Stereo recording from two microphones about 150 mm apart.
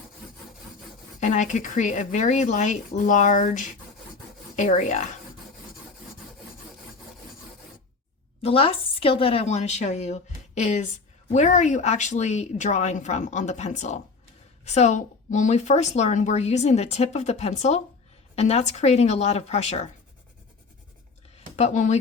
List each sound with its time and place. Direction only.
1.2 s a woman's voice: 55° left (ahead or behind)
8.4 s a woman's voice: 40° left (ahead or behind)
21.5 s speech: 50° left (ahead or behind)